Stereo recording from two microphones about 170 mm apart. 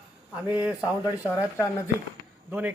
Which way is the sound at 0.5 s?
10° right (ahead or behind).